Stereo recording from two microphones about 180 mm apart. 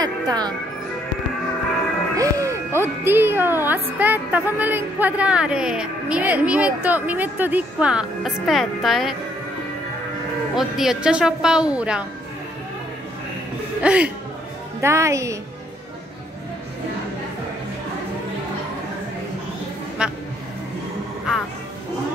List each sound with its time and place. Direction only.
0.0 s music: 20° right (ahead or behind)
2.1 s speech: 20° right (ahead or behind); by 9.1 s centre (ahead or behind)
10.5 s a woman's voice: centre (ahead or behind)
13.8 s speech: 5° right (ahead or behind)
20.0 s a woman's voice: 5° right (ahead or behind)